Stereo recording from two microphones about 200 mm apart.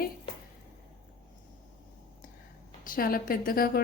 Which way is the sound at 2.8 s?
45° left (ahead or behind).